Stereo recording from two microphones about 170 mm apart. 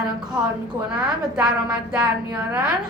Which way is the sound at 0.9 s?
5° right (ahead or behind).